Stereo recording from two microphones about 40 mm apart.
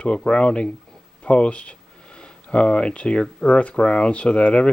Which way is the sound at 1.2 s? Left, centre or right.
Left.